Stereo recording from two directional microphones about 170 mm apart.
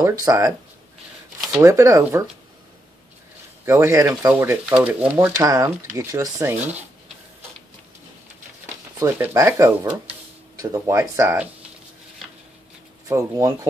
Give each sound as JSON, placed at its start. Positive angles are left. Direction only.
{"t": 0.0, "sound": "speech", "side_deg": -20}
{"t": 1.6, "sound": "speech", "side_deg": -15}
{"t": 3.6, "sound": "speech", "side_deg": -15}
{"t": 9.0, "sound": "speech", "side_deg": -15}
{"t": 13.1, "sound": "speech", "side_deg": -20}